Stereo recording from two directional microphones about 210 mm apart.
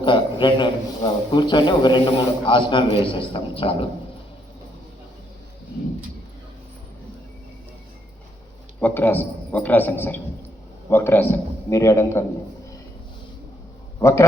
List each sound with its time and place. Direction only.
0.0 s a man's voice: 20° left (ahead or behind)
8.8 s a man's voice: 10° left (ahead or behind)
14.0 s a man's voice: 15° left (ahead or behind)